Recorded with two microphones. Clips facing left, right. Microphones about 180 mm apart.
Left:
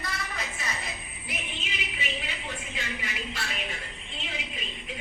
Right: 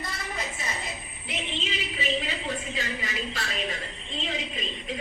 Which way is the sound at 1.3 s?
30° right (ahead or behind).